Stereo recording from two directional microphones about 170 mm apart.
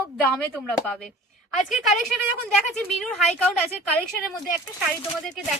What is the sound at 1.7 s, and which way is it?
Speech, centre (ahead or behind).